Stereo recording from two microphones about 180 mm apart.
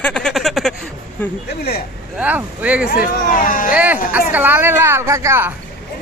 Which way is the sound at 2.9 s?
50° left (ahead or behind).